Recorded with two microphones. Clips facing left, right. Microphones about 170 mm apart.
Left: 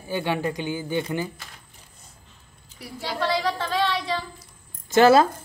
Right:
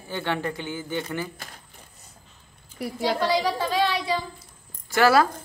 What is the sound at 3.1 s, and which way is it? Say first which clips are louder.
Speech: left 2 dB; 10° right (ahead or behind).